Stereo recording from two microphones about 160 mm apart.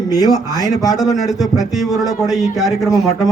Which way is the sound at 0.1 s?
25° left (ahead or behind).